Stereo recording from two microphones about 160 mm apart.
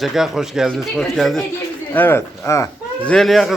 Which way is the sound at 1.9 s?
15° left (ahead or behind).